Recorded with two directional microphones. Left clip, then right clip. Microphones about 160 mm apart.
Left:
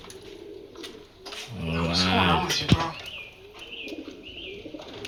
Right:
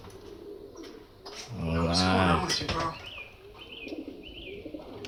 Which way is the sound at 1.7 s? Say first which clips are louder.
Left 2 dB; 20° right (ahead or behind).